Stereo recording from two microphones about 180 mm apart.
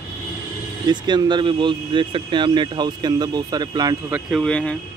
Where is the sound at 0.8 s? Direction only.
25° right (ahead or behind).